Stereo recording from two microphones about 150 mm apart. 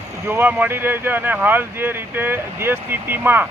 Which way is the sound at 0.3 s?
10° right (ahead or behind).